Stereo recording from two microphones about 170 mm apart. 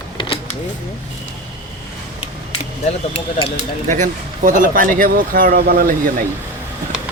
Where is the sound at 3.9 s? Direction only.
50° right (ahead or behind).